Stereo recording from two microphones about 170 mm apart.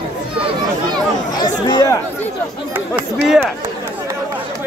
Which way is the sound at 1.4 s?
25° left (ahead or behind).